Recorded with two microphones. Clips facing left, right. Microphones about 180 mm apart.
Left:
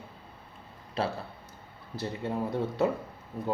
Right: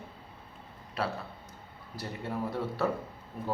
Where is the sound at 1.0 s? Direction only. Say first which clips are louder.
Left 2 dB; 25° left (ahead or behind).